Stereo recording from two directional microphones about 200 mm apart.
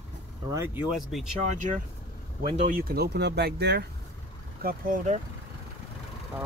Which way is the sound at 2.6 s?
45° right (ahead or behind).